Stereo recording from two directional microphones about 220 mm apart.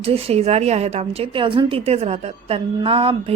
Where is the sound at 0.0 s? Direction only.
25° right (ahead or behind).